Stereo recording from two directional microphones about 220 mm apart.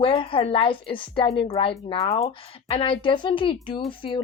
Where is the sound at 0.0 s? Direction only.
25° left (ahead or behind).